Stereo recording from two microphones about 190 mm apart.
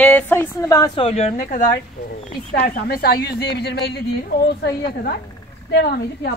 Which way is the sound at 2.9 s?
55° left (ahead or behind).